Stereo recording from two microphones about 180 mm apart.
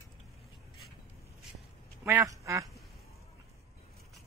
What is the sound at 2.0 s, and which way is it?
Speech, 20° right (ahead or behind).